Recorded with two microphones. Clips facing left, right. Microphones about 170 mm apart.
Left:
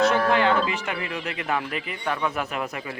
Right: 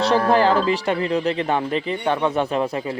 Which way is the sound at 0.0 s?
35° right (ahead or behind).